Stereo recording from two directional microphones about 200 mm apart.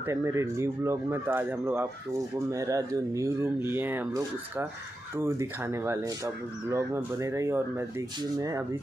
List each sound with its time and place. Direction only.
0.0 s speech: 15° right (ahead or behind)